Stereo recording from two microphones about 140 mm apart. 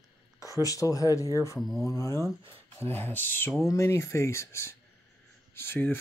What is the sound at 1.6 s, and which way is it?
Speech, centre (ahead or behind).